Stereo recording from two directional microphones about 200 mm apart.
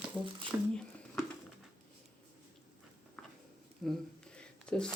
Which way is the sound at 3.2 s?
5° left (ahead or behind).